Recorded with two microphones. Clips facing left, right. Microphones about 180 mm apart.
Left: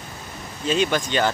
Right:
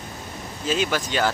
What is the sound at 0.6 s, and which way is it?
Speech, 5° right (ahead or behind).